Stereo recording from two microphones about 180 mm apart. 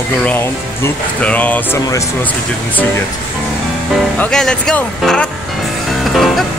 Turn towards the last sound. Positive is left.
turn(degrees=0)  # may be behind; listen again after turning